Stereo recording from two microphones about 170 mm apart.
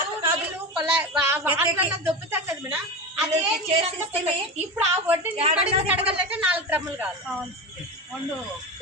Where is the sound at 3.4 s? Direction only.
40° right (ahead or behind).